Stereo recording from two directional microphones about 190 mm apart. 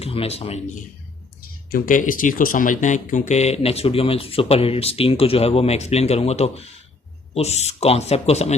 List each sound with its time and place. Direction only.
0.0 s speech: 30° left (ahead or behind)
1.7 s speech: 45° left (ahead or behind)